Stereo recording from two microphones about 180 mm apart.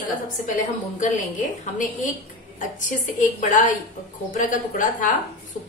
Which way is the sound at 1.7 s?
45° left (ahead or behind).